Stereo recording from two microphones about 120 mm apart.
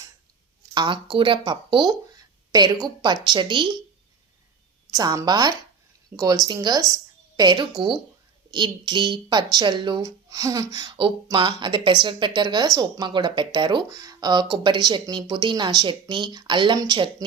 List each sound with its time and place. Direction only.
0.7 s a woman's voice: 40° right (ahead or behind)
4.9 s a woman's voice: 25° right (ahead or behind)
10.9 s a woman's voice: 45° right (ahead or behind)